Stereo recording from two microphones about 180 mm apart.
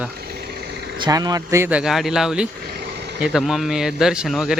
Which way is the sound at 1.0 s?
20° right (ahead or behind).